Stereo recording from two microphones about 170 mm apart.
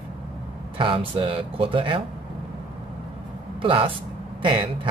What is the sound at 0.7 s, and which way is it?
Speech, 30° right (ahead or behind).